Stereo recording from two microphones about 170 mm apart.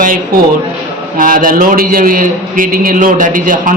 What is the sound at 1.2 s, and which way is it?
A man's voice, 55° right (ahead or behind).